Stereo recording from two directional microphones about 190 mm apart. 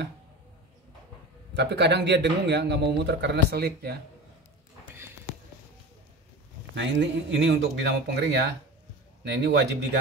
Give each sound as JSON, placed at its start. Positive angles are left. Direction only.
{"t": 1.5, "sound": "a man's voice", "side_deg": -65}
{"t": 6.7, "sound": "speech", "side_deg": -70}